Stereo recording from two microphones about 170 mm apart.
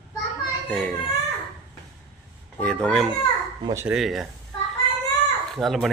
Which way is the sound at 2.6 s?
5° left (ahead or behind).